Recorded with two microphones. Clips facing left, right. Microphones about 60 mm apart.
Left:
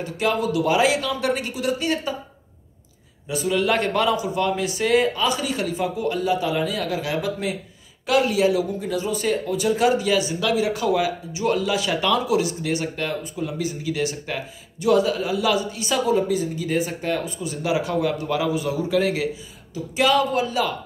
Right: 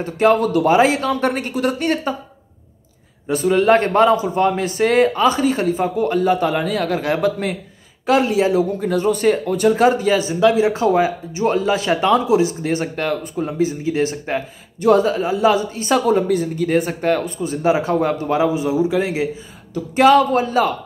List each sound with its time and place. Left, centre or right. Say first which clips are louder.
0.0 s speech: right 8 dB; right
3.3 s speech: right 7 dB; right
8.1 s speech: right 3 dB; right
8.7 s speech: right 7 dB; right
19.7 s speech: right 8 dB; right